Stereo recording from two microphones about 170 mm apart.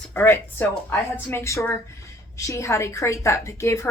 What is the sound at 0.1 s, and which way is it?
A woman's voice, 15° left (ahead or behind).